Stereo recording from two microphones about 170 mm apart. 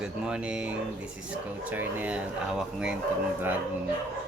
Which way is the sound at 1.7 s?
10° right (ahead or behind).